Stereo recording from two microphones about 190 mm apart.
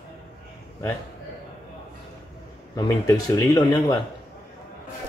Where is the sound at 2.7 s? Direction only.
20° left (ahead or behind).